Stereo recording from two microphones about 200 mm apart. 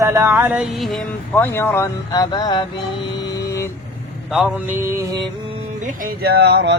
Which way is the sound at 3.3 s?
15° left (ahead or behind).